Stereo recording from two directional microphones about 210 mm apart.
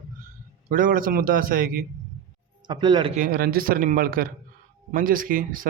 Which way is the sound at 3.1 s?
40° right (ahead or behind).